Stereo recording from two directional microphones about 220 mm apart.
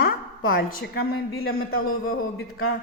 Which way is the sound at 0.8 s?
50° left (ahead or behind).